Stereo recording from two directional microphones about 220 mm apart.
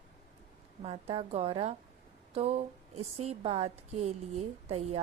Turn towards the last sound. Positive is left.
turn(degrees=-30)  # may be behind; listen again after turning